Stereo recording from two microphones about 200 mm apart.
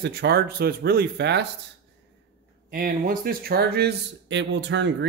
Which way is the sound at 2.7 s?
45° right (ahead or behind).